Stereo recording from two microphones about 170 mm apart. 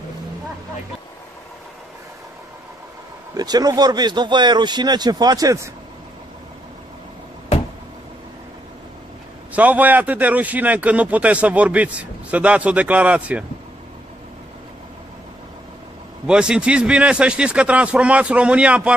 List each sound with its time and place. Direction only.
3.3 s speech: 25° right (ahead or behind)
9.5 s a man's voice: 10° right (ahead or behind)
16.3 s a man's voice: 5° right (ahead or behind)